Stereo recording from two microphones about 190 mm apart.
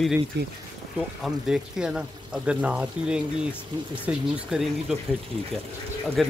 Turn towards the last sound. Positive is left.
turn(degrees=0)  # may be behind; listen again after turning